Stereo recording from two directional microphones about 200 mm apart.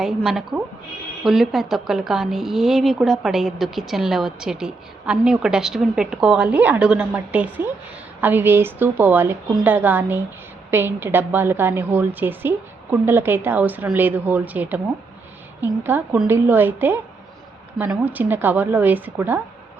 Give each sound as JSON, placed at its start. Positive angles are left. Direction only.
{"t": 0.3, "sound": "a woman's voice", "side_deg": 0}